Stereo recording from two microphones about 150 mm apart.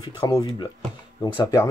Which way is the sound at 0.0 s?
25° left (ahead or behind).